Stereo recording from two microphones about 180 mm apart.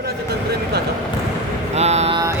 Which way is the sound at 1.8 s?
35° right (ahead or behind).